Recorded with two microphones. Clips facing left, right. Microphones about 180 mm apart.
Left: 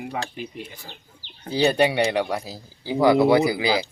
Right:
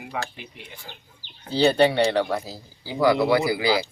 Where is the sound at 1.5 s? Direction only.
10° left (ahead or behind).